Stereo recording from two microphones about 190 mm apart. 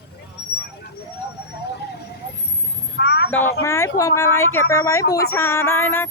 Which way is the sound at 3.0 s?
65° left (ahead or behind).